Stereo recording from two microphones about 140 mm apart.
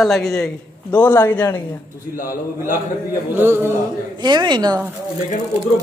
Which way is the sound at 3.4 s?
15° right (ahead or behind).